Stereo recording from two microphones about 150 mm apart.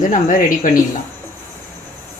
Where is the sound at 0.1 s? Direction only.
60° left (ahead or behind).